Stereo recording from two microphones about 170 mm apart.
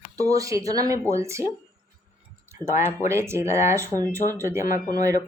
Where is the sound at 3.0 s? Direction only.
15° right (ahead or behind).